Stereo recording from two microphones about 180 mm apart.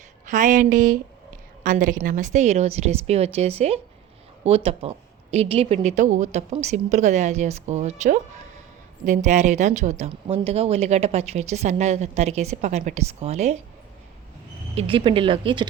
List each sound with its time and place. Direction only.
0.3 s a woman's voice: 45° right (ahead or behind)
14.8 s speech: 30° right (ahead or behind)